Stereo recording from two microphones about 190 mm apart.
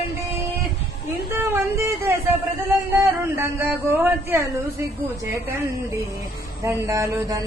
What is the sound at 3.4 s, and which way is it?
A man's voice, 10° right (ahead or behind).